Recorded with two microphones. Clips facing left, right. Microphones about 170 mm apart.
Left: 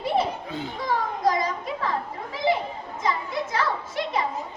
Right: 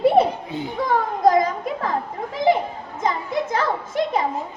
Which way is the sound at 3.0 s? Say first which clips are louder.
Right 4 dB; 50° right (ahead or behind).